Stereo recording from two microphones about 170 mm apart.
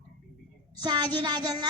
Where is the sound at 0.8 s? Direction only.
25° right (ahead or behind).